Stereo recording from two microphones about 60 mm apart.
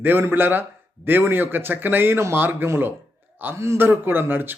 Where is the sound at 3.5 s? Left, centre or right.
Right.